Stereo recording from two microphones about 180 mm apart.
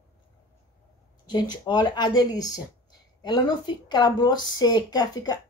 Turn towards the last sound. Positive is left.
turn(degrees=20)  # may be behind; listen again after turning